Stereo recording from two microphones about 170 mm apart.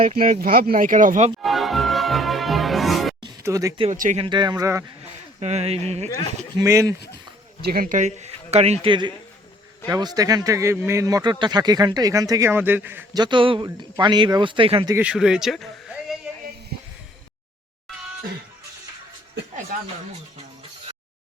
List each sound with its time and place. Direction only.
0.0 s speech: 50° right (ahead or behind)
1.4 s music: centre (ahead or behind)
3.2 s music: 20° right (ahead or behind)
3.9 s speech: 50° right (ahead or behind)
4.2 s speech: 25° right (ahead or behind)
5.4 s a man's voice: 40° right (ahead or behind)
6.6 s speech: 20° right (ahead or behind)
7.6 s a man's voice: 60° right (ahead or behind); by 13.1 s 10° right (ahead or behind)
13.1 s speech: 30° right (ahead or behind)
14.9 s speech: 5° right (ahead or behind)
16.7 s a sound: 65° right (ahead or behind)
17.8 s music: centre (ahead or behind)